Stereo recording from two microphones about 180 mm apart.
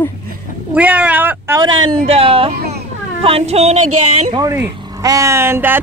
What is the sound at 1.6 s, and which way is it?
Speech, 25° right (ahead or behind).